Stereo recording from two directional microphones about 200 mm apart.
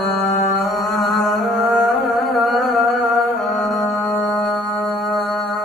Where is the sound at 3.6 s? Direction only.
15° left (ahead or behind).